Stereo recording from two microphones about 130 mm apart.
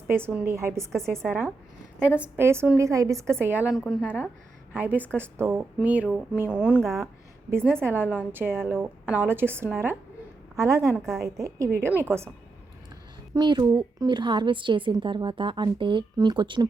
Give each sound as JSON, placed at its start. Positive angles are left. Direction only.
{"t": 0.1, "sound": "a woman's voice", "side_deg": -15}
{"t": 3.7, "sound": "a woman's voice", "side_deg": 0}
{"t": 4.0, "sound": "speech", "side_deg": 10}
{"t": 4.7, "sound": "a woman's voice", "side_deg": -15}
{"t": 13.3, "sound": "a woman's voice", "side_deg": -35}